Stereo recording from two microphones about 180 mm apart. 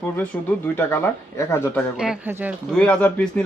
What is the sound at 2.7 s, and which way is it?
Speech, 5° left (ahead or behind).